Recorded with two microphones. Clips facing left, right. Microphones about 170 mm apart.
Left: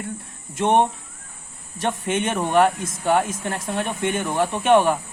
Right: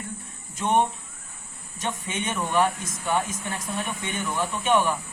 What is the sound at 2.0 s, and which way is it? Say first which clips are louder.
Speech: left 7 dB; 55° left (ahead or behind).